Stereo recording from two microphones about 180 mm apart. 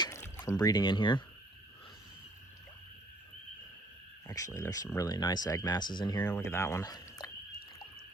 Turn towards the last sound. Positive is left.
turn(degrees=20)  # may be behind; listen again after turning